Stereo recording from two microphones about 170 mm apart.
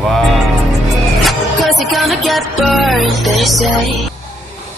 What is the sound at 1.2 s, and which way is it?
Music, centre (ahead or behind).